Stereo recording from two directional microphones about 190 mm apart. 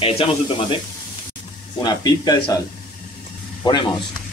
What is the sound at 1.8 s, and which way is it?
Speech, 20° left (ahead or behind).